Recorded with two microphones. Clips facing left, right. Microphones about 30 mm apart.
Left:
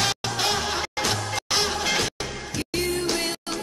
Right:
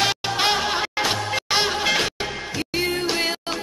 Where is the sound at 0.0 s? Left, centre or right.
Right.